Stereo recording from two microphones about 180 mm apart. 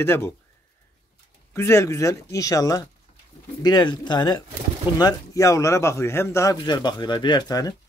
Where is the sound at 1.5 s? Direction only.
15° left (ahead or behind).